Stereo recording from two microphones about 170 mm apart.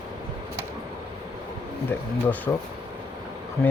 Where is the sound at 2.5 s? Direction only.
15° left (ahead or behind).